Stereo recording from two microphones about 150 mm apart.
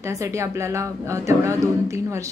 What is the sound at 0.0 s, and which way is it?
A man's voice, 20° right (ahead or behind).